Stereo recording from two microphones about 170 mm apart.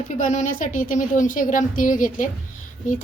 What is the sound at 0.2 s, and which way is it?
A woman's voice, 50° left (ahead or behind).